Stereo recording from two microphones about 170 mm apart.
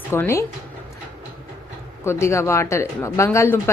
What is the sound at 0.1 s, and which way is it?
Speech, 15° left (ahead or behind).